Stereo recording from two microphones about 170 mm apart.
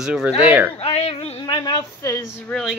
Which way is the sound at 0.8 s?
35° left (ahead or behind).